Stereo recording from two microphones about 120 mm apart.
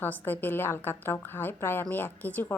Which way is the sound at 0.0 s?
15° left (ahead or behind).